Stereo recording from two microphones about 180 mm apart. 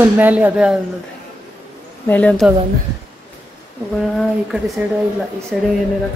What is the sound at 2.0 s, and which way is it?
Speech, 10° left (ahead or behind).